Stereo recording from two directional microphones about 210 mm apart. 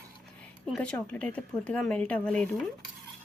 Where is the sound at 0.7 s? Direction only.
5° left (ahead or behind).